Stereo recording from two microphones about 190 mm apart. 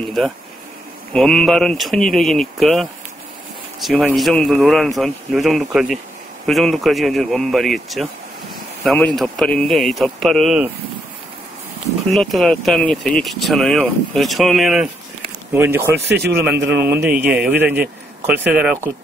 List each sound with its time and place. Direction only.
0.0 s speech: centre (ahead or behind)
12.1 s a man's voice: centre (ahead or behind)
16.1 s speech: 60° right (ahead or behind)
16.6 s a man's voice: 10° right (ahead or behind)